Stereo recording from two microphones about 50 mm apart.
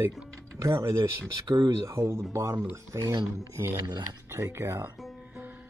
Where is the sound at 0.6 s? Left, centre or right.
Right.